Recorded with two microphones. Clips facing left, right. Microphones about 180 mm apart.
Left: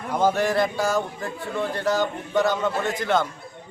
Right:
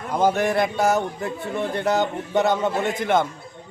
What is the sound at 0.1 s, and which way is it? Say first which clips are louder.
A man's voice: right 1 dB; 15° right (ahead or behind).